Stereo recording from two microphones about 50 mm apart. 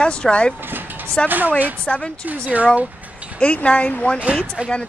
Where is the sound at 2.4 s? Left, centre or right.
Right.